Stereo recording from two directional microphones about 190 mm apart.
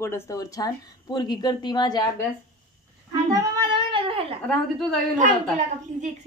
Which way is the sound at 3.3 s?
20° right (ahead or behind).